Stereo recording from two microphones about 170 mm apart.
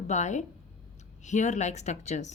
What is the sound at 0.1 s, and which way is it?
Speech, 45° left (ahead or behind).